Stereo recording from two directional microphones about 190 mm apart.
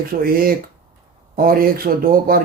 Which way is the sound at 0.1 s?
50° right (ahead or behind).